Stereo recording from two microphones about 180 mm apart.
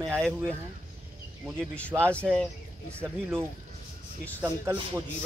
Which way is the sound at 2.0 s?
5° left (ahead or behind).